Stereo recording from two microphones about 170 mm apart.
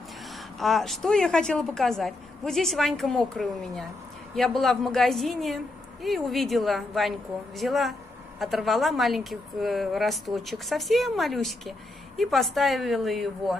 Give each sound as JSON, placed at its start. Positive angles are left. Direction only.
{"t": 0.3, "sound": "a woman's voice", "side_deg": 0}